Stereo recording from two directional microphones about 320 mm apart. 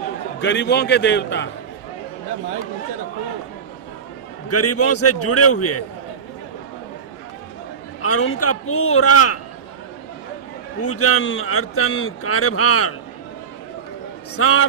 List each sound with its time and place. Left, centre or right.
0.4 s a man's voice: left
4.5 s a man's voice: left
8.0 s a man's voice: left
10.8 s a man's voice: left
14.3 s a man's voice: left